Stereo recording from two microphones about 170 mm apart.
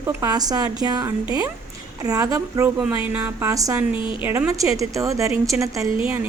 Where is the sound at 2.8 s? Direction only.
10° right (ahead or behind).